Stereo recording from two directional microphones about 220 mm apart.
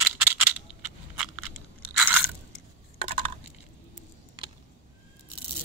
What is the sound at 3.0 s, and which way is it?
Coin, 25° right (ahead or behind).